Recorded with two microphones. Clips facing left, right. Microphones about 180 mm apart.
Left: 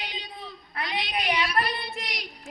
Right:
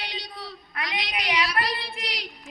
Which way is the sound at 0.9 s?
90° right.